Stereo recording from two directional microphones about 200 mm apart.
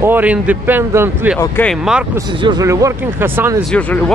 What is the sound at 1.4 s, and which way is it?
Speech, 10° left (ahead or behind).